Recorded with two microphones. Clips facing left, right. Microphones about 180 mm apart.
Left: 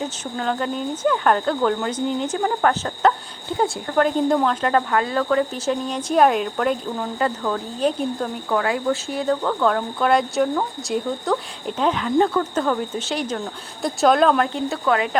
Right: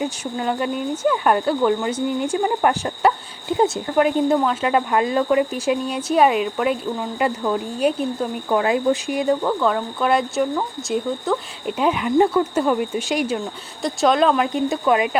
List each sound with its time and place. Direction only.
0.0 s speech: 10° right (ahead or behind)
3.9 s speech: 5° right (ahead or behind)
4.9 s speech: 15° right (ahead or behind)
8.4 s speech: 20° right (ahead or behind)
9.6 s speech: centre (ahead or behind)
13.8 s speech: centre (ahead or behind); by 15.2 s 15° right (ahead or behind)